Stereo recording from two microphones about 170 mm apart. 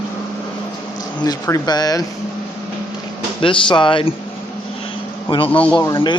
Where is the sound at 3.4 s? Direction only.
30° left (ahead or behind).